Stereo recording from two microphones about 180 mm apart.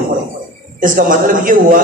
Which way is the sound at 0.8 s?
50° right (ahead or behind).